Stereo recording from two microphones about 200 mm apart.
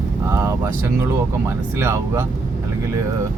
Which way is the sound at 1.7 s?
15° right (ahead or behind).